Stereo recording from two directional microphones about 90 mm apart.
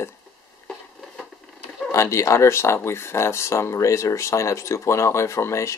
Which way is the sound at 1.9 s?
35° left (ahead or behind).